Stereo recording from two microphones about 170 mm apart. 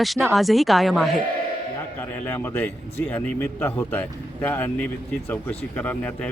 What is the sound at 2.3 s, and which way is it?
Speech, 10° left (ahead or behind).